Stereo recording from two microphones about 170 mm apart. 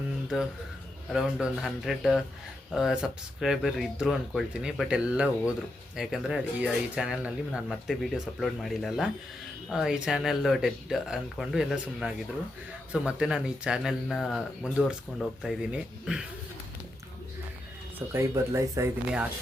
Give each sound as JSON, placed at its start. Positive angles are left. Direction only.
{"t": 1.1, "sound": "speech", "side_deg": -5}
{"t": 18.1, "sound": "speech", "side_deg": -15}